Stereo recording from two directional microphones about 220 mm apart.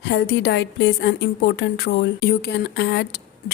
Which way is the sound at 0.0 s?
50° left (ahead or behind).